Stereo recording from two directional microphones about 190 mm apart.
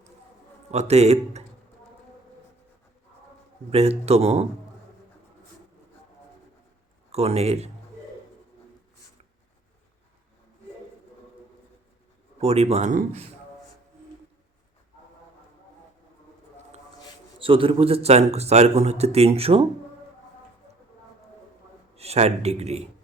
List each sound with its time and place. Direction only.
0.7 s speech: 35° right (ahead or behind)
3.7 s speech: 30° right (ahead or behind)
7.1 s speech: 35° right (ahead or behind)
12.4 s speech: 35° right (ahead or behind)
17.4 s speech: 25° right (ahead or behind)
21.9 s speech: 35° right (ahead or behind)